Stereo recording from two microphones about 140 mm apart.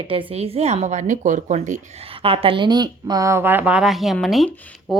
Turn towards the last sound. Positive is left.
turn(degrees=0)  # may be behind; listen again after turning